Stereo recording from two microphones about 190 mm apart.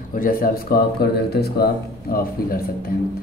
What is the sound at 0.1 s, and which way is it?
Speech, 50° left (ahead or behind).